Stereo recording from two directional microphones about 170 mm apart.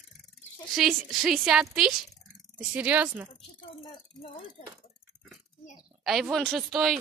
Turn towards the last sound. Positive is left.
turn(degrees=0)  # may be behind; listen again after turning